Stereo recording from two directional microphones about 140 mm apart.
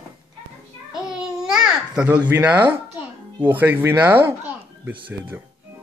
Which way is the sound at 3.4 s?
15° right (ahead or behind).